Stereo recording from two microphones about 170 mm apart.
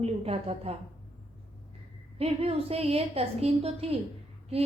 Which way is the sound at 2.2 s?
35° right (ahead or behind).